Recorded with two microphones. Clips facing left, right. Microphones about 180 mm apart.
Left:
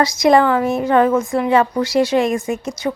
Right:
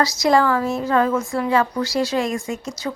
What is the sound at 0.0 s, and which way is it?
Speech, 20° left (ahead or behind).